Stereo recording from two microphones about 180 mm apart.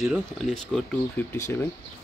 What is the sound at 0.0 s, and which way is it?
Speech, centre (ahead or behind).